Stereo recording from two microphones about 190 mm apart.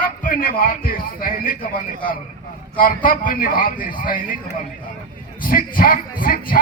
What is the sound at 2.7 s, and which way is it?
Speech, 45° left (ahead or behind).